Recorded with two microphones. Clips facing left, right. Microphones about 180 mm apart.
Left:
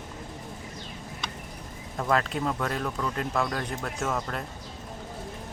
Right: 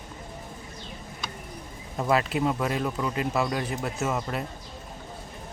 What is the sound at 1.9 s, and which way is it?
Speech, 10° right (ahead or behind).